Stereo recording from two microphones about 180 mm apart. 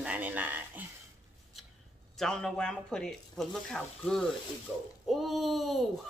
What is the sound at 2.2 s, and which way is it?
Speech, 5° left (ahead or behind).